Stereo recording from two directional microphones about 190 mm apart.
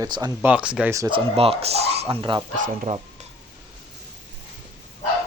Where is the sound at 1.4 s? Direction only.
30° right (ahead or behind).